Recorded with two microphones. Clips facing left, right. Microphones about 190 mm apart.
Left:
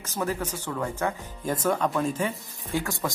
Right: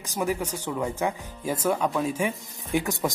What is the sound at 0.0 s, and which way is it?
Speech, 15° right (ahead or behind).